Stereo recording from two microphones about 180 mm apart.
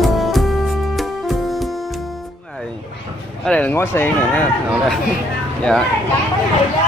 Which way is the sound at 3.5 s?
10° left (ahead or behind).